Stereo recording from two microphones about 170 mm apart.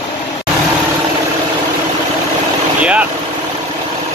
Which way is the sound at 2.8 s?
5° right (ahead or behind).